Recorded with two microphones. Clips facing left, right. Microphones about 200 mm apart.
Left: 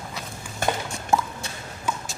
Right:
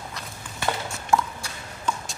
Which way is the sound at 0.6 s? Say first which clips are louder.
Left 2 dB; 45° left (ahead or behind).